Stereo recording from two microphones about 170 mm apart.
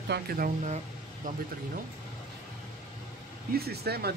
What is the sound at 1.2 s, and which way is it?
Speech, 50° right (ahead or behind).